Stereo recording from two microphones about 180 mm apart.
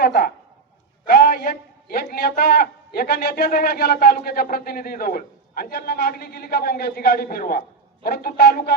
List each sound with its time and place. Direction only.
0.0 s a man's voice: 70° left (ahead or behind)
1.0 s a sound: 55° left (ahead or behind)
2.1 s a man's voice: 60° left (ahead or behind)